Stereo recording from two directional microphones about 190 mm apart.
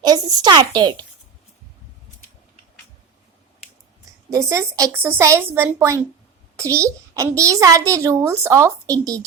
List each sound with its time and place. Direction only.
0.0 s speech: 20° right (ahead or behind)
4.3 s a child's voice: 15° right (ahead or behind)